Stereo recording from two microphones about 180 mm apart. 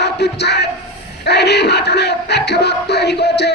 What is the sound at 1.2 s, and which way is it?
Music, 70° left (ahead or behind).